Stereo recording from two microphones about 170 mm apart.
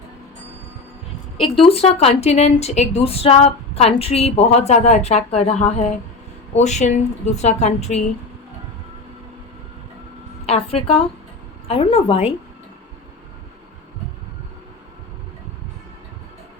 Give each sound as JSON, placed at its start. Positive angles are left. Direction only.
{"t": 1.5, "sound": "a woman's voice", "side_deg": 35}
{"t": 10.4, "sound": "a woman's voice", "side_deg": 35}